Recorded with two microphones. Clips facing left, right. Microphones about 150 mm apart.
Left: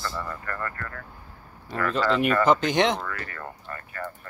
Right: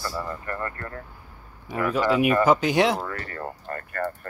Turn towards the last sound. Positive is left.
turn(degrees=-55)  # may be behind; listen again after turning